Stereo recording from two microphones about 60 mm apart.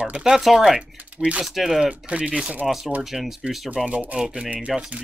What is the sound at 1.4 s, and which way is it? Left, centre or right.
Speech, centre.